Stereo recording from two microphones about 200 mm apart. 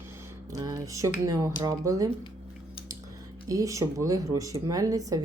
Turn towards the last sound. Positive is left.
turn(degrees=-15)  # may be behind; listen again after turning